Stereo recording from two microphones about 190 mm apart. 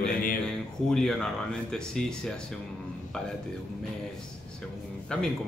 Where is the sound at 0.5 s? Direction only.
Centre (ahead or behind).